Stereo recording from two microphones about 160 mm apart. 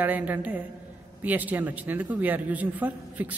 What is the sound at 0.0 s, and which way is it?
A man's voice, 10° right (ahead or behind).